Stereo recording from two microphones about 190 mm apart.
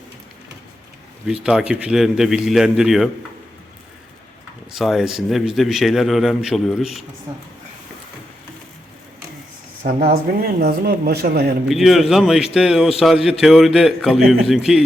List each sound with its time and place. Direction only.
1.3 s a man's voice: 5° right (ahead or behind)
4.7 s a man's voice: centre (ahead or behind)
9.8 s speech: 55° right (ahead or behind)
11.7 s a man's voice: centre (ahead or behind)